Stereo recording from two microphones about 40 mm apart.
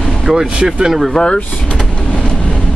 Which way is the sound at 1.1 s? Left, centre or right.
Centre.